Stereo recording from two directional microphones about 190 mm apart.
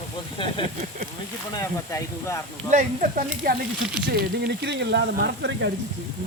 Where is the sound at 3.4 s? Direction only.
55° right (ahead or behind).